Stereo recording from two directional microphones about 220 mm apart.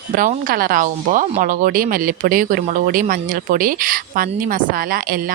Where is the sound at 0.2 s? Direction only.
40° right (ahead or behind).